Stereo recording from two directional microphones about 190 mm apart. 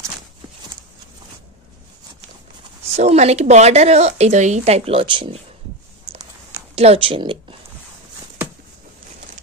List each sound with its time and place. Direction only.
2.9 s a woman's voice: 35° right (ahead or behind)
6.7 s speech: 30° right (ahead or behind)